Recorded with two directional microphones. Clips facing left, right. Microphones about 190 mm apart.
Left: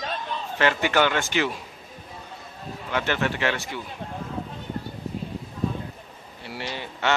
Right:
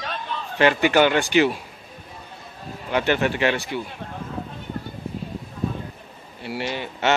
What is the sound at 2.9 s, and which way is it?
Speech, 15° right (ahead or behind).